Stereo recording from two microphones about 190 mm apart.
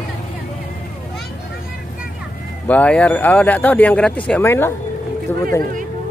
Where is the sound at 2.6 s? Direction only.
5° left (ahead or behind).